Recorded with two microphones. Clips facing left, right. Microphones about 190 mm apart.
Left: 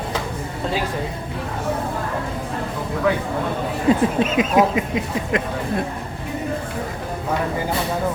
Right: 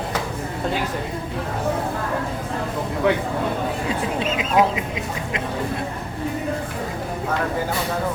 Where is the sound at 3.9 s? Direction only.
50° left (ahead or behind).